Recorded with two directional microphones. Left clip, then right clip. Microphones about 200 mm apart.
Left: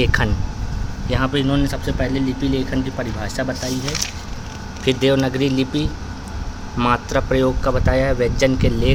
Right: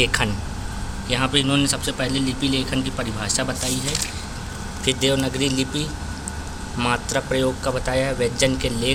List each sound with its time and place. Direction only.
0.0 s speech: 25° left (ahead or behind)
4.9 s speech: 35° left (ahead or behind)